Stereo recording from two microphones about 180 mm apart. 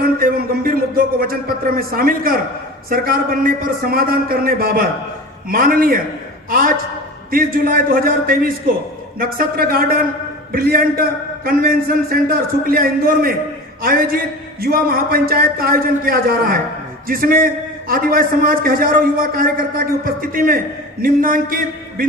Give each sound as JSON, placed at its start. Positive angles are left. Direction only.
{"t": 0.0, "sound": "a man's voice", "side_deg": -55}